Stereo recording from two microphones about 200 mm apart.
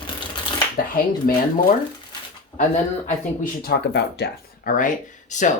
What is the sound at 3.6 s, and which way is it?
Speech, 55° left (ahead or behind).